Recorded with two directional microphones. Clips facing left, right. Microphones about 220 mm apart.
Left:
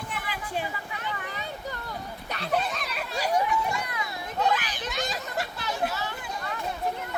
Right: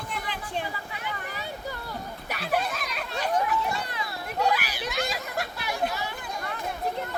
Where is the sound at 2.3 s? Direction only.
5° right (ahead or behind).